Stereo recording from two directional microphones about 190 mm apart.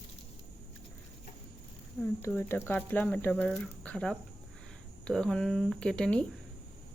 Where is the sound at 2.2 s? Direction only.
10° left (ahead or behind).